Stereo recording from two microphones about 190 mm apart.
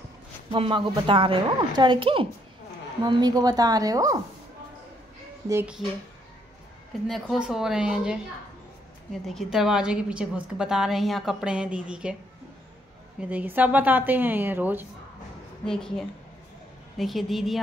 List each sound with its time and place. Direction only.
0.6 s speech: 25° right (ahead or behind)
5.5 s a woman's voice: 10° right (ahead or behind)
7.1 s a woman's voice: 5° right (ahead or behind)
9.3 s a woman's voice: centre (ahead or behind)
13.2 s a woman's voice: 10° right (ahead or behind)
15.6 s a woman's voice: 5° left (ahead or behind)
16.9 s a woman's voice: centre (ahead or behind)